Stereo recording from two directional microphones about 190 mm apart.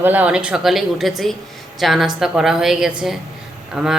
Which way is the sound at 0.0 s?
10° right (ahead or behind).